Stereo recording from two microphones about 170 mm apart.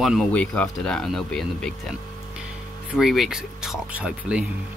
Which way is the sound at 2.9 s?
Centre (ahead or behind).